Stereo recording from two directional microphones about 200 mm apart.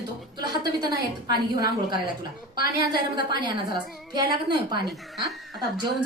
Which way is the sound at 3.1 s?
20° right (ahead or behind).